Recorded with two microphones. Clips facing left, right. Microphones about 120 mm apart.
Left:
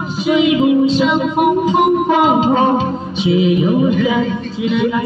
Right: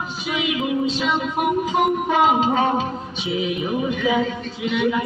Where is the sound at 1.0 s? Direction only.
35° left (ahead or behind).